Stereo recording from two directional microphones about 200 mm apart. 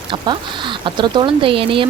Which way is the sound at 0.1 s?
25° right (ahead or behind).